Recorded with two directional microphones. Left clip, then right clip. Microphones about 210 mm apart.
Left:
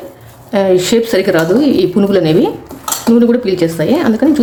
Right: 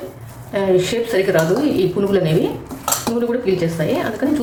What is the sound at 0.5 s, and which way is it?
A woman's voice, 50° left (ahead or behind).